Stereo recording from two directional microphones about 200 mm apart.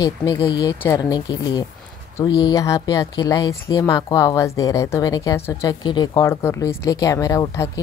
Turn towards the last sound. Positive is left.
turn(degrees=15)  # may be behind; listen again after turning